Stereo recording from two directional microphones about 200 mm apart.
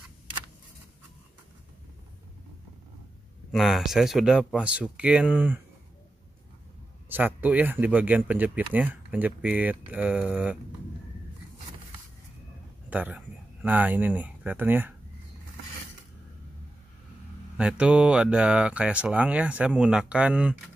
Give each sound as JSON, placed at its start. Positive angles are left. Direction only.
{"t": 3.5, "sound": "speech", "side_deg": 0}
{"t": 7.1, "sound": "speech", "side_deg": -10}
{"t": 12.9, "sound": "speech", "side_deg": -5}
{"t": 17.6, "sound": "speech", "side_deg": -5}